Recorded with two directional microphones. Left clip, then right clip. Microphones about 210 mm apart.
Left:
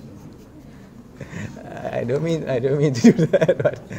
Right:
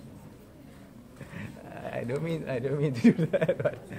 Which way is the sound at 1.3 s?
25° left (ahead or behind).